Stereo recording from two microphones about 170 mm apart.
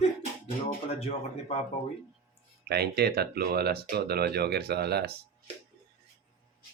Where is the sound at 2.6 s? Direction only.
70° right (ahead or behind).